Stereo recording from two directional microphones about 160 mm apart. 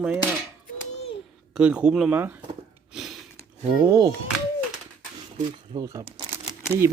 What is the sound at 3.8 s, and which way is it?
Speech, 20° right (ahead or behind).